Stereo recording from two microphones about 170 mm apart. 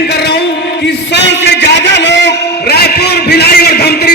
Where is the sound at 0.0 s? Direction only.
75° left (ahead or behind).